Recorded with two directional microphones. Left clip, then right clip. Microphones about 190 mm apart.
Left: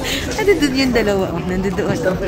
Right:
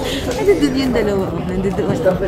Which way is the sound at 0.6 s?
25° left (ahead or behind).